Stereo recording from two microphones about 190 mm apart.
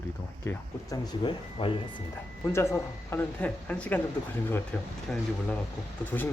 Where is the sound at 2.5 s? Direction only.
15° left (ahead or behind).